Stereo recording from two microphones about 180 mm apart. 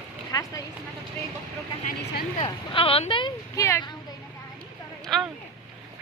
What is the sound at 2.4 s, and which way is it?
Speech, 30° left (ahead or behind).